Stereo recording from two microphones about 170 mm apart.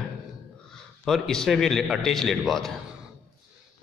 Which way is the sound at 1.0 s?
Centre (ahead or behind).